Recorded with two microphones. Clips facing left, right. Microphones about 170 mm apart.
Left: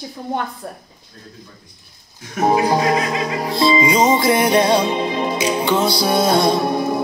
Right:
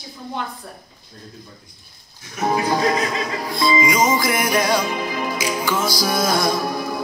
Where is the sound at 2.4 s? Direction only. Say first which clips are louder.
Left 3 dB; 30° left (ahead or behind).